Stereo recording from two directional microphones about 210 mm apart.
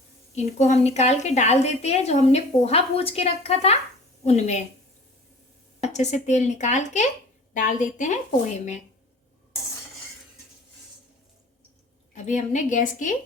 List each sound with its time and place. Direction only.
0.3 s a woman's voice: 30° left (ahead or behind)
5.8 s a woman's voice: 35° left (ahead or behind)
12.1 s a woman's voice: 35° left (ahead or behind)